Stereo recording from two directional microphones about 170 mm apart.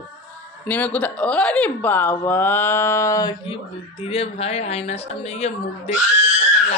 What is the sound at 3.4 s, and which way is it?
Speech, 35° left (ahead or behind).